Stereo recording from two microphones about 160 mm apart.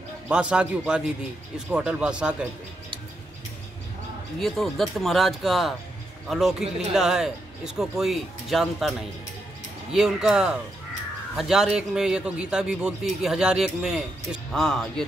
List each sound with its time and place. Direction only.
0.3 s speech: 5° right (ahead or behind)
4.4 s a man's voice: centre (ahead or behind)
9.9 s a man's voice: 5° right (ahead or behind)